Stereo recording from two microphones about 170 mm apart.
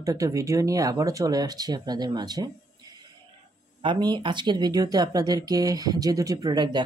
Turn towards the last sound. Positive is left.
turn(degrees=-25)  # may be behind; listen again after turning